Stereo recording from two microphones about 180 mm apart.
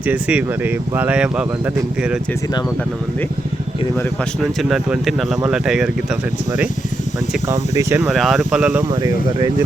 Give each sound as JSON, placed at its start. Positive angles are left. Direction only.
{"t": 0.0, "sound": "speech", "side_deg": -5}
{"t": 4.4, "sound": "speech", "side_deg": 0}
{"t": 7.8, "sound": "speech", "side_deg": -15}
{"t": 8.0, "sound": "speech", "side_deg": 0}
{"t": 9.0, "sound": "speech", "side_deg": -20}